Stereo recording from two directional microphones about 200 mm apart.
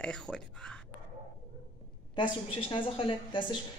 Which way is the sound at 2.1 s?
25° left (ahead or behind).